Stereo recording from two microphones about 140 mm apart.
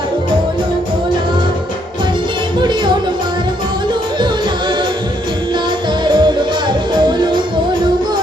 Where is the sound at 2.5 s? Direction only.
30° right (ahead or behind).